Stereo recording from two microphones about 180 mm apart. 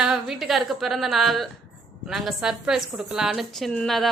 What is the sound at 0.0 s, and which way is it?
A woman's voice, centre (ahead or behind).